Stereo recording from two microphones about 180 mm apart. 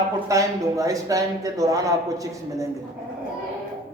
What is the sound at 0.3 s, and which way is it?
Speech, 20° right (ahead or behind).